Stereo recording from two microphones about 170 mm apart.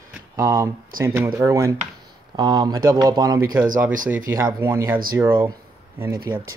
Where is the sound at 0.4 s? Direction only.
15° right (ahead or behind).